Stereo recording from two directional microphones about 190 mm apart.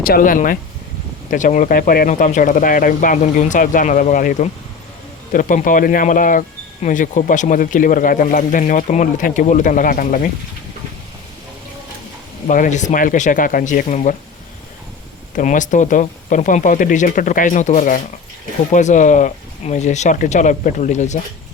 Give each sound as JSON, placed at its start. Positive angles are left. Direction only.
{"t": 0.0, "sound": "speech", "side_deg": 50}
{"t": 12.5, "sound": "speech", "side_deg": 40}
{"t": 15.4, "sound": "speech", "side_deg": 40}